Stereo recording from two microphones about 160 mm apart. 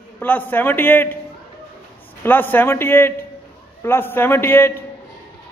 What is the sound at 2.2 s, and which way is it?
A man's voice, 10° left (ahead or behind).